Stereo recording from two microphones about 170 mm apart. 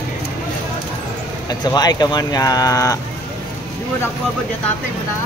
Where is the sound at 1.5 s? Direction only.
25° left (ahead or behind).